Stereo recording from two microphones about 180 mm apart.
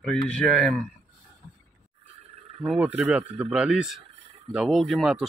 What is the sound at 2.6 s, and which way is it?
Speech, 5° right (ahead or behind).